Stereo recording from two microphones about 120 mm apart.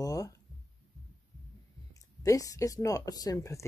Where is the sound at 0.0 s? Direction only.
30° left (ahead or behind).